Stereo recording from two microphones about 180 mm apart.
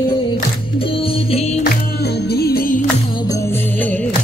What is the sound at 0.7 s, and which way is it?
Music, 30° left (ahead or behind).